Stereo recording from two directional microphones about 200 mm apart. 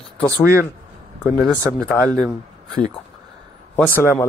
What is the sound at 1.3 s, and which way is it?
Speech, 5° left (ahead or behind).